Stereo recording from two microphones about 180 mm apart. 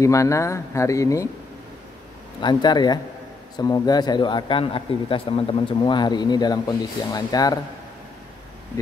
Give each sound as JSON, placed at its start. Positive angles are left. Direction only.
{"t": 0.0, "sound": "speech", "side_deg": 15}
{"t": 2.4, "sound": "speech", "side_deg": 25}